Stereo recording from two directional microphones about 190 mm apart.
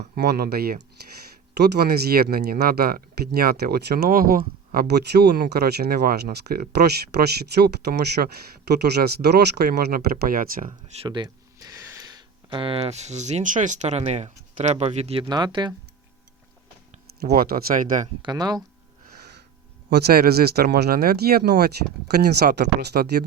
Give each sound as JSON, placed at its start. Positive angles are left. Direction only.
{"t": 0.2, "sound": "speech", "side_deg": -55}
{"t": 11.0, "sound": "speech", "side_deg": -25}
{"t": 15.3, "sound": "speech", "side_deg": -20}
{"t": 17.2, "sound": "speech", "side_deg": -55}
{"t": 18.2, "sound": "speech", "side_deg": -20}
{"t": 19.9, "sound": "speech", "side_deg": -55}